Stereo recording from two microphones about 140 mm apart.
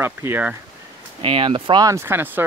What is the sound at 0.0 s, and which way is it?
Speech, 15° right (ahead or behind).